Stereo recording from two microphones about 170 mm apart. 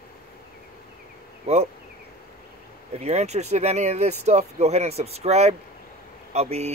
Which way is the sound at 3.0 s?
40° right (ahead or behind).